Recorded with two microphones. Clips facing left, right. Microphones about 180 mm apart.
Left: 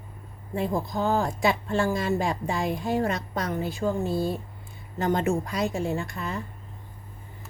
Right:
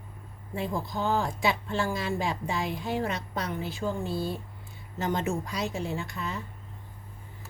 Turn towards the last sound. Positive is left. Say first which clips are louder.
# left 3 dB
turn(degrees=50)  # may be behind; listen again after turning